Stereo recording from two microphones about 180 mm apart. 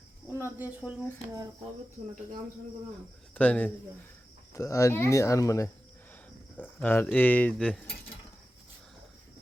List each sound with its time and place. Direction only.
0.6 s speech: 10° right (ahead or behind)
3.3 s speech: 5° left (ahead or behind)
6.8 s speech: 10° left (ahead or behind)